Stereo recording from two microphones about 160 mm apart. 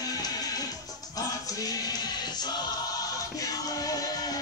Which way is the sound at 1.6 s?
25° left (ahead or behind).